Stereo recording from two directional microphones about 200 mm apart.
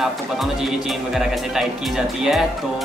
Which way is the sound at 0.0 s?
Centre (ahead or behind).